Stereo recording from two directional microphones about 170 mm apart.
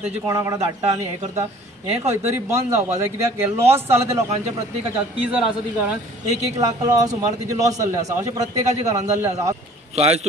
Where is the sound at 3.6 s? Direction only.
15° right (ahead or behind).